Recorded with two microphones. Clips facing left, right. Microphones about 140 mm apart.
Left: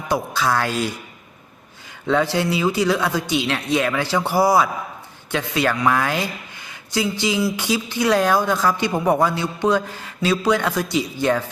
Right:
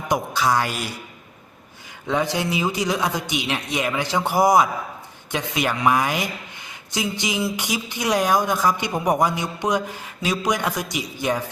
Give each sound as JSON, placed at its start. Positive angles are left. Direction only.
{"t": 0.1, "sound": "speech", "side_deg": -15}
{"t": 2.0, "sound": "speech", "side_deg": -15}